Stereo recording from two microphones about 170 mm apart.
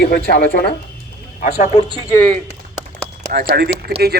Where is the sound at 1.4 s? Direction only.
45° left (ahead or behind).